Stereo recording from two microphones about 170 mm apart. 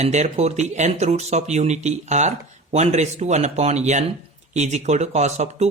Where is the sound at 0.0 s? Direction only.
40° right (ahead or behind).